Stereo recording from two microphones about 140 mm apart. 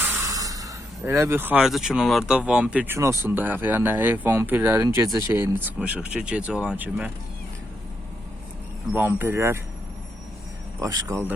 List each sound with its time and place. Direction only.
0.3 s speech: 25° right (ahead or behind)
8.9 s speech: 15° right (ahead or behind)
10.8 s speech: 25° right (ahead or behind)